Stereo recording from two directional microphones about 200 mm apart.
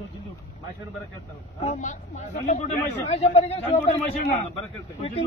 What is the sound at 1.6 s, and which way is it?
Speech, 35° left (ahead or behind).